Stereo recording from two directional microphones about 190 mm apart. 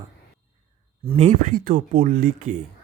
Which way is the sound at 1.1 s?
35° right (ahead or behind).